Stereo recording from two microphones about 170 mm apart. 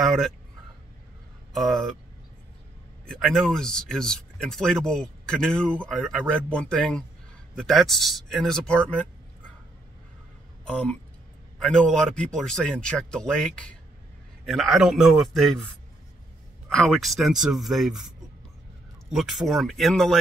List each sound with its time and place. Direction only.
0.0 s speech: centre (ahead or behind)
1.5 s speech: centre (ahead or behind)
3.1 s speech: centre (ahead or behind)
10.6 s speech: 5° left (ahead or behind)
16.6 s speech: centre (ahead or behind)
19.1 s speech: centre (ahead or behind)